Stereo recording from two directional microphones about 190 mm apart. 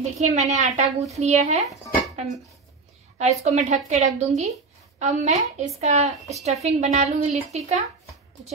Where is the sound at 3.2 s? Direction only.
35° right (ahead or behind).